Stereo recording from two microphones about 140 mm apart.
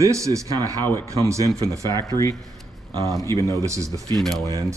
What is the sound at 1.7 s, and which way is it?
Speech, 25° right (ahead or behind).